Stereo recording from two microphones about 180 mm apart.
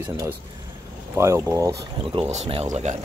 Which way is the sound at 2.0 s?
30° right (ahead or behind).